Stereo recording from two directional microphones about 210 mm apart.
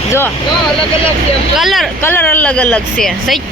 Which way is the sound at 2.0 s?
10° left (ahead or behind).